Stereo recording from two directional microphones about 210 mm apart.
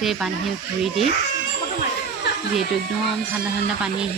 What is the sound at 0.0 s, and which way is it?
Speech, centre (ahead or behind).